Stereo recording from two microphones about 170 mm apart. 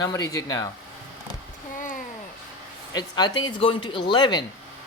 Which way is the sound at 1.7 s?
50° left (ahead or behind).